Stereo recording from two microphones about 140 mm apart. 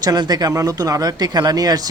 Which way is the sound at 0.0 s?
30° right (ahead or behind).